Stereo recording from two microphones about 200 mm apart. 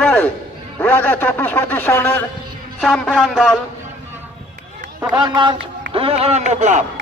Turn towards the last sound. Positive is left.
turn(degrees=-35)  # may be behind; listen again after turning